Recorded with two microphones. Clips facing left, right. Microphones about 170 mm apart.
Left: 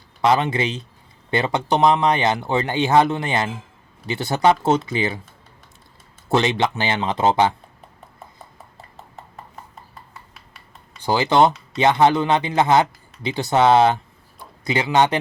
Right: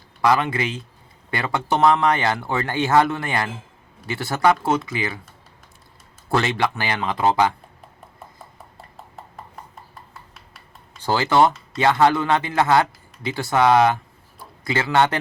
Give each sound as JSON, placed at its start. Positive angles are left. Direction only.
{"t": 0.2, "sound": "speech", "side_deg": 25}
{"t": 6.2, "sound": "speech", "side_deg": 20}
{"t": 8.8, "sound": "horse", "side_deg": 0}
{"t": 9.9, "sound": "a sound", "side_deg": 0}
{"t": 11.0, "sound": "speech", "side_deg": 15}